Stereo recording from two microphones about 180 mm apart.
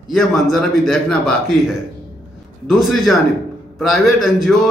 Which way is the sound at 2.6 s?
Centre (ahead or behind).